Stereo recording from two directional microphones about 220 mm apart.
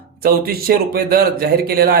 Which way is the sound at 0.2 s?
45° right (ahead or behind).